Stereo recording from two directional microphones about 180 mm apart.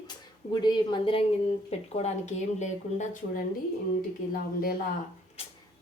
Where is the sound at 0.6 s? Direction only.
25° left (ahead or behind).